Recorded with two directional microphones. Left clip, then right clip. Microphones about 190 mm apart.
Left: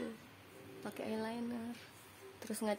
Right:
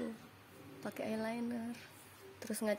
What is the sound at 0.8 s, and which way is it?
Speech, 10° right (ahead or behind).